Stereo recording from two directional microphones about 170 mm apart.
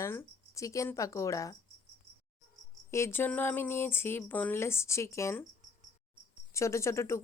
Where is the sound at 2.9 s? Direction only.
15° left (ahead or behind).